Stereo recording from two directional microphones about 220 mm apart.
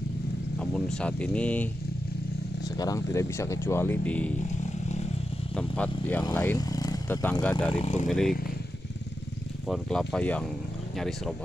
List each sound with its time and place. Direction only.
0.6 s speech: 5° left (ahead or behind)
2.8 s speech: 15° left (ahead or behind)
4.6 s vehicle: 30° left (ahead or behind)
5.6 s speech: 5° left (ahead or behind)
7.7 s speech: 30° left (ahead or behind)
8.1 s speech: centre (ahead or behind)
9.7 s speech: centre (ahead or behind)